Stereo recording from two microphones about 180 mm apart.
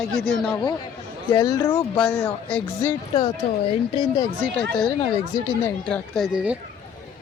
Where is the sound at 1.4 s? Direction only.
20° left (ahead or behind).